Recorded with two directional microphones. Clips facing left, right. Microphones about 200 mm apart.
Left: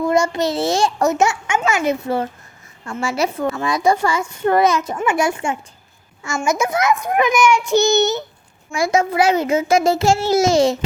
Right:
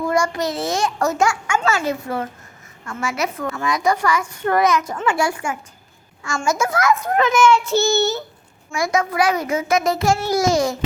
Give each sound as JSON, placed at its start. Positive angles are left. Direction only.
{"t": 0.1, "sound": "a child's voice", "side_deg": 25}